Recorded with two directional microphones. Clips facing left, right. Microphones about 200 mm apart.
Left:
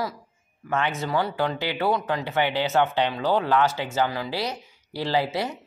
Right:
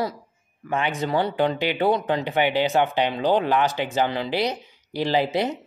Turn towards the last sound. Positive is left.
turn(degrees=-20)  # may be behind; listen again after turning